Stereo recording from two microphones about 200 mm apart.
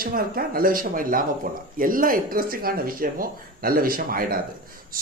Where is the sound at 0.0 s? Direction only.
45° right (ahead or behind).